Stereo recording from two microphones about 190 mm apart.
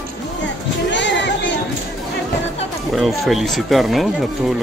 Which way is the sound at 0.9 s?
70° left (ahead or behind).